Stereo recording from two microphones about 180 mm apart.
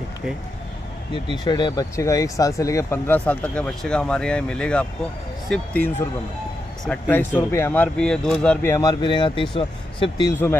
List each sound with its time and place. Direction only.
1.1 s speech: 25° left (ahead or behind); by 5.9 s 5° left (ahead or behind)
6.9 s speech: 10° left (ahead or behind)
8.7 s speech: 25° left (ahead or behind)